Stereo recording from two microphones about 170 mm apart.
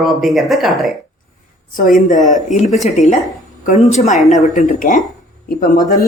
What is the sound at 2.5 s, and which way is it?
Speech, 40° left (ahead or behind).